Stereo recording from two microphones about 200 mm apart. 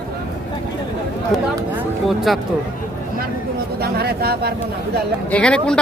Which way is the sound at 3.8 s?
50° right (ahead or behind).